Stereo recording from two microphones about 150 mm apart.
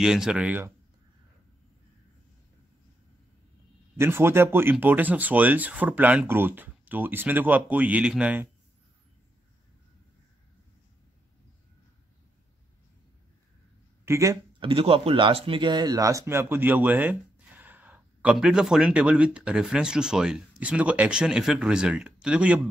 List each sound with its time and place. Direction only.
0.0 s speech: 5° right (ahead or behind)
4.0 s speech: 15° right (ahead or behind)
14.0 s speech: 20° right (ahead or behind)
14.6 s speech: 35° right (ahead or behind); by 22.6 s 5° right (ahead or behind)